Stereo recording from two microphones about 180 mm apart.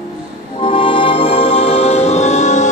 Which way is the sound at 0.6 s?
30° left (ahead or behind).